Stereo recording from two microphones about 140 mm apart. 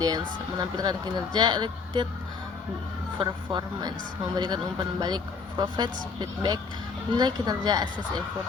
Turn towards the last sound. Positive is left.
turn(degrees=-30)  # may be behind; listen again after turning